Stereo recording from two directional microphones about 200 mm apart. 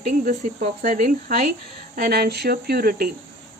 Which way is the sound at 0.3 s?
40° right (ahead or behind).